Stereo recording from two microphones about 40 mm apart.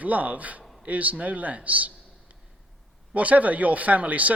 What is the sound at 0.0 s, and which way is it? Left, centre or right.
A man's voice, right.